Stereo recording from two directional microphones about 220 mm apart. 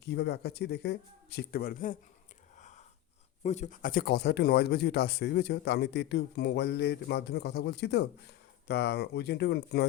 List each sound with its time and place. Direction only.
0.0 s speech: 50° left (ahead or behind)
2.6 s a sound: 30° left (ahead or behind)
3.4 s speech: 30° left (ahead or behind); by 9.8 s 50° left (ahead or behind)